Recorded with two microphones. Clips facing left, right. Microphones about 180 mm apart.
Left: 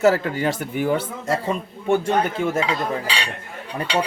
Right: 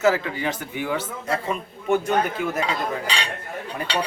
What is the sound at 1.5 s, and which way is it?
Speech, 30° left (ahead or behind).